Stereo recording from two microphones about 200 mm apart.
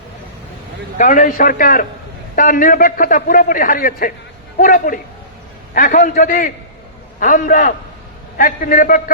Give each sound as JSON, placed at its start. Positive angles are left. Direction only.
{"t": 0.9, "sound": "a man's voice", "side_deg": 40}